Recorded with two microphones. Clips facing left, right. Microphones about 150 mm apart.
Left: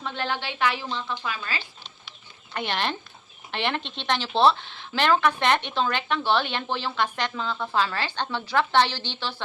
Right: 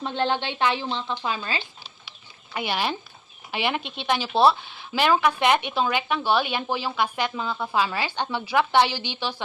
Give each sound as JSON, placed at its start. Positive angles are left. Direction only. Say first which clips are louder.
{"t": 0.0, "sound": "a woman's voice", "louder": "right 5 dB", "side_deg": -25}
{"t": 1.8, "sound": "a sound", "louder": "even", "side_deg": -5}
{"t": 3.5, "sound": "a woman's voice", "louder": "right 1 dB", "side_deg": -10}